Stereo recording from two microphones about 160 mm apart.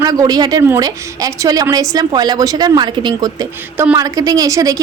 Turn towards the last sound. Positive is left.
turn(degrees=-20)  # may be behind; listen again after turning